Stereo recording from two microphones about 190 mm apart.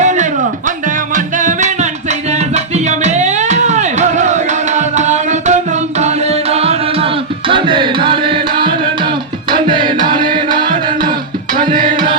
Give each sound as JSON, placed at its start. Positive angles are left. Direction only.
{"t": 0.0, "sound": "music", "side_deg": -40}
{"t": 11.5, "sound": "tabla", "side_deg": -45}